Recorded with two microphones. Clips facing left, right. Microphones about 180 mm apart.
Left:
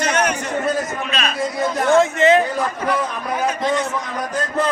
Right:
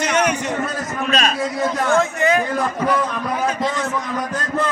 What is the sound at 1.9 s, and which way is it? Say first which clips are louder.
Speech: left 6 dB; 25° left (ahead or behind).